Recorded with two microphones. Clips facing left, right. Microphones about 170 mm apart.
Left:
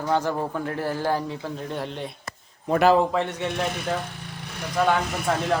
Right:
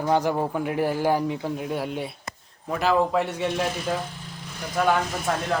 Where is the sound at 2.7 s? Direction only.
50° left (ahead or behind).